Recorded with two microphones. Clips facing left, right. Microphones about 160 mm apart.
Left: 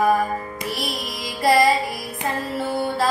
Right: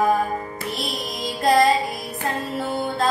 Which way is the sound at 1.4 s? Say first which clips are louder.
Even; 5° left (ahead or behind).